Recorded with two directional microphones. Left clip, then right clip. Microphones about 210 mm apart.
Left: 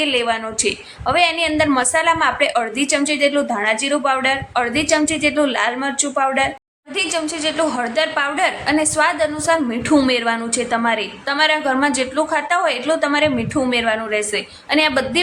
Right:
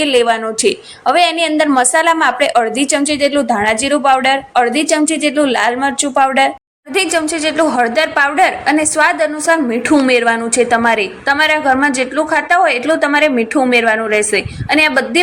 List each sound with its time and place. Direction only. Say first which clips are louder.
0.0 s a woman's voice: right 6 dB; 25° right (ahead or behind)